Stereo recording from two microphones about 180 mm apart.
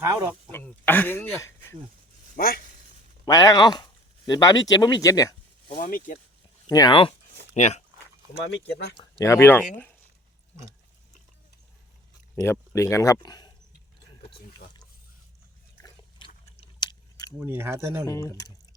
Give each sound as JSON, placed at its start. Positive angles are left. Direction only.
{"t": 0.0, "sound": "speech", "side_deg": -15}
{"t": 0.5, "sound": "speech", "side_deg": 10}
{"t": 2.3, "sound": "speech", "side_deg": 55}
{"t": 3.2, "sound": "speech", "side_deg": 20}
{"t": 5.7, "sound": "speech", "side_deg": 45}
{"t": 6.7, "sound": "speech", "side_deg": 20}
{"t": 7.5, "sound": "speech", "side_deg": 40}
{"t": 9.0, "sound": "speech", "side_deg": 15}
{"t": 12.4, "sound": "speech", "side_deg": 15}
{"t": 15.8, "sound": "chewing", "side_deg": 30}
{"t": 17.3, "sound": "speech", "side_deg": -10}
{"t": 18.3, "sound": "speech", "side_deg": 20}